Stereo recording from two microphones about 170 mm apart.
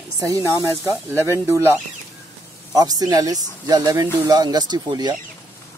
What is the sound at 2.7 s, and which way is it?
A man's voice, 20° right (ahead or behind).